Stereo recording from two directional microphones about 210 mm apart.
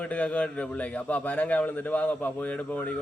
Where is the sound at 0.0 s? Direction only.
5° left (ahead or behind).